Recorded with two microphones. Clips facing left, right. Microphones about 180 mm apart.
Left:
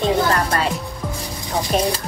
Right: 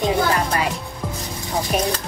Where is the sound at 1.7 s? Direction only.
10° right (ahead or behind).